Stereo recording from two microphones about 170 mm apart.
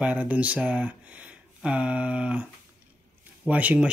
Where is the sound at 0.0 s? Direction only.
10° right (ahead or behind).